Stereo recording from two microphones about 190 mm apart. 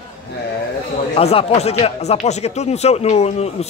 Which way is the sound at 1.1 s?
30° left (ahead or behind).